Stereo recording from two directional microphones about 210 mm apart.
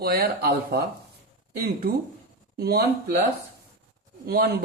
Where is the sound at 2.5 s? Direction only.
50° right (ahead or behind).